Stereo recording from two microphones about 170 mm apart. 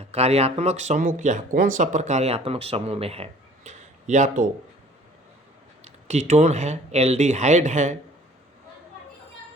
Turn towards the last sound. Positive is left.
turn(degrees=-45)  # may be behind; listen again after turning